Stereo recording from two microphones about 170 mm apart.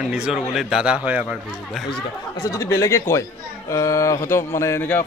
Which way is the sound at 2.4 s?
20° left (ahead or behind).